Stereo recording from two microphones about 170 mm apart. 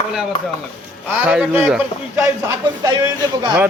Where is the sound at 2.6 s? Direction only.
20° right (ahead or behind).